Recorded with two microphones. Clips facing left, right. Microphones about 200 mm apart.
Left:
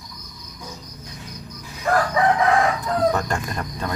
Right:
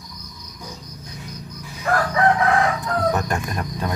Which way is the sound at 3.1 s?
15° right (ahead or behind).